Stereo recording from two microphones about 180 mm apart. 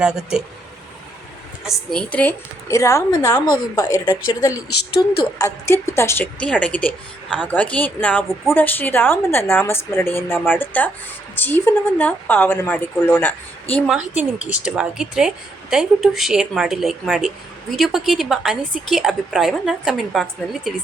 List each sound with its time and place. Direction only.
0.0 s speech: 5° right (ahead or behind)
1.6 s a woman's voice: 5° left (ahead or behind)
14.2 s speech: 5° right (ahead or behind)